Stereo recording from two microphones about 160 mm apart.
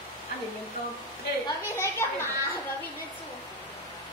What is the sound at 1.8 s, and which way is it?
Speech, 15° left (ahead or behind).